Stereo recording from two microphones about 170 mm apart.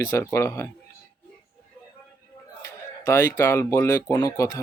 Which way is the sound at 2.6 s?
15° left (ahead or behind).